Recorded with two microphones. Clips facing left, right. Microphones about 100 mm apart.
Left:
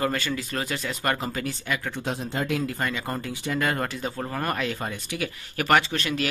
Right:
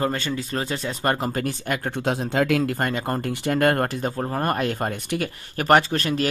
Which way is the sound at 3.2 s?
65° right (ahead or behind).